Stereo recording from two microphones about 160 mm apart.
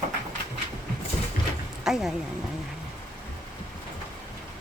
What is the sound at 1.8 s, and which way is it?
Speech, centre (ahead or behind).